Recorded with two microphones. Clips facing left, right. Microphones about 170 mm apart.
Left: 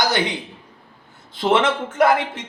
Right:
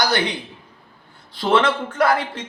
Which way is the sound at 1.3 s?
20° left (ahead or behind).